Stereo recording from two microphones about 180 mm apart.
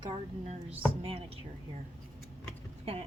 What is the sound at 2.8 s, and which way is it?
Speech, 30° right (ahead or behind).